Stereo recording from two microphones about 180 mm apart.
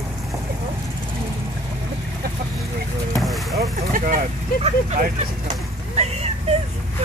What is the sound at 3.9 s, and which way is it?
Vehicle, 50° right (ahead or behind).